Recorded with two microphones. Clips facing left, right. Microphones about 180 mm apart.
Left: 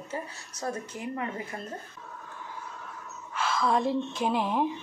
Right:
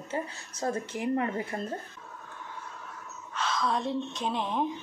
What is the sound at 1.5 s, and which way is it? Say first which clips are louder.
Speech: right 4 dB; 30° right (ahead or behind).